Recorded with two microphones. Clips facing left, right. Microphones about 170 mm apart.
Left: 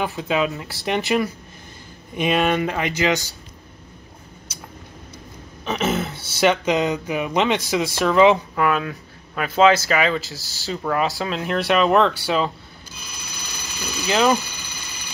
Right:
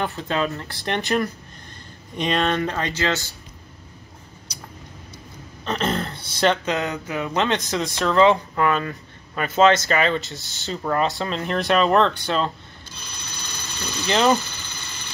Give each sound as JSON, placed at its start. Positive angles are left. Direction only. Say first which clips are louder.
{"t": 0.0, "sound": "speech", "louder": "left 2 dB", "side_deg": 5}
{"t": 5.7, "sound": "speech", "louder": "left 2 dB", "side_deg": 5}
{"t": 12.9, "sound": "a sound", "louder": "even", "side_deg": 5}